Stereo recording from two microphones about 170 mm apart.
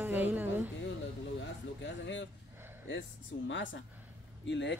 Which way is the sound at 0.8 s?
90° left.